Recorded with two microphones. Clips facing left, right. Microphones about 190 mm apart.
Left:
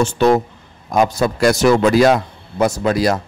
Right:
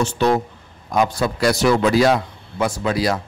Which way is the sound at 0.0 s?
50° left (ahead or behind).